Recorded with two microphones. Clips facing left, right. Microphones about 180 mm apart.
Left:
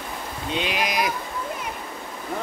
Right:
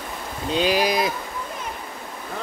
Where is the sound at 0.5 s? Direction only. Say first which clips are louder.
Right 5 dB; 35° right (ahead or behind).